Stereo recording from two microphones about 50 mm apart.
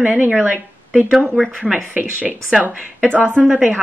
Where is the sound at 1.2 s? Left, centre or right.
Centre.